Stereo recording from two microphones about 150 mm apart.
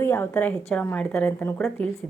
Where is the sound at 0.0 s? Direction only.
15° left (ahead or behind).